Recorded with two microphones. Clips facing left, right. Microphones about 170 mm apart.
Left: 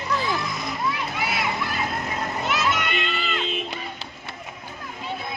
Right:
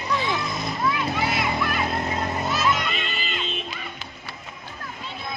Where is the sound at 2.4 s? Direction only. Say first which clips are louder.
Left 1 dB; 75° left (ahead or behind).